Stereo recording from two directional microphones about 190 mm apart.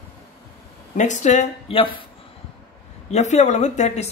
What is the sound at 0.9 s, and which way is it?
Speech, 40° left (ahead or behind).